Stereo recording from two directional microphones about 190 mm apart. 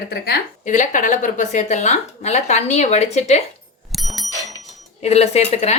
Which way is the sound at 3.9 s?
Centre (ahead or behind).